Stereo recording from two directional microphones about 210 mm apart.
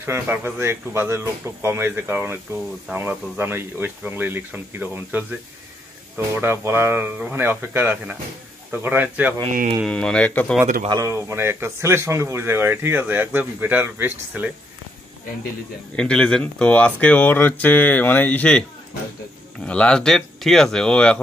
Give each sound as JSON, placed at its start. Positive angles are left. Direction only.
{"t": 0.0, "sound": "speech", "side_deg": -10}
{"t": 9.5, "sound": "speech", "side_deg": -40}
{"t": 9.8, "sound": "speech", "side_deg": 5}
{"t": 10.9, "sound": "speech", "side_deg": -15}
{"t": 16.0, "sound": "speech", "side_deg": 5}
{"t": 19.6, "sound": "speech", "side_deg": 5}